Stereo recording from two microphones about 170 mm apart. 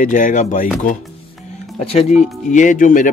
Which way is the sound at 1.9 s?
40° left (ahead or behind).